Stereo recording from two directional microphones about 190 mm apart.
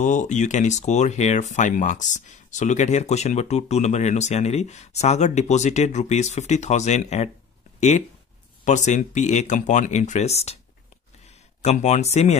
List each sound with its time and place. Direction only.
0.0 s speech: 40° left (ahead or behind)
8.6 s speech: 40° left (ahead or behind)
11.6 s speech: 35° left (ahead or behind)